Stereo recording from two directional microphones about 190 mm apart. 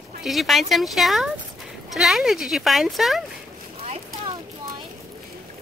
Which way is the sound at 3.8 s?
30° right (ahead or behind).